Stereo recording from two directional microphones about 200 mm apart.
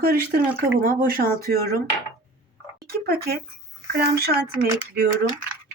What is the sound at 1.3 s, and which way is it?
Speech, 15° left (ahead or behind).